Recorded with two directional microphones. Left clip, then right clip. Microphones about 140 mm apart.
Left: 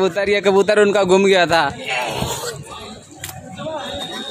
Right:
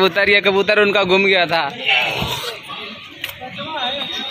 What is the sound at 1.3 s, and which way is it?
Speech, 65° left (ahead or behind).